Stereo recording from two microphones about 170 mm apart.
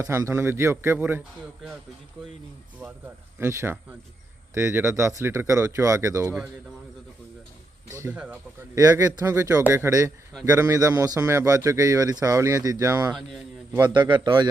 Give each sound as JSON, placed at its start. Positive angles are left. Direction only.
{"t": 0.0, "sound": "speech", "side_deg": -15}
{"t": 3.3, "sound": "speech", "side_deg": -15}
{"t": 7.9, "sound": "a man's voice", "side_deg": -15}
{"t": 13.1, "sound": "speech", "side_deg": 0}
{"t": 13.7, "sound": "a man's voice", "side_deg": -25}